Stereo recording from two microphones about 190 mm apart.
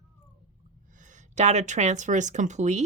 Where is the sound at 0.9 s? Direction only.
40° right (ahead or behind).